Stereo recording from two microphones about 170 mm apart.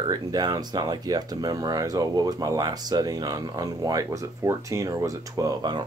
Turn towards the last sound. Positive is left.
turn(degrees=-25)  # may be behind; listen again after turning